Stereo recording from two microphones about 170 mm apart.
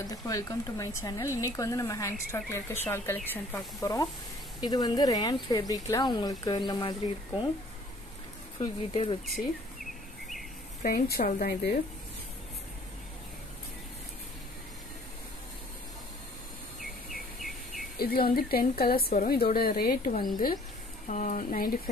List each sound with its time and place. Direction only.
0.0 s speech: 20° left (ahead or behind)
8.5 s speech: 35° left (ahead or behind)
10.9 s a woman's voice: 65° left (ahead or behind)
17.1 s insect: centre (ahead or behind)
17.9 s a woman's voice: 65° left (ahead or behind)